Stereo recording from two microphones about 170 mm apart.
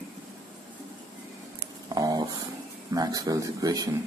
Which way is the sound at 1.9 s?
25° right (ahead or behind).